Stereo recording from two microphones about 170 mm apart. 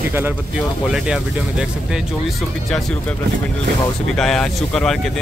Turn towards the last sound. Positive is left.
turn(degrees=5)  # may be behind; listen again after turning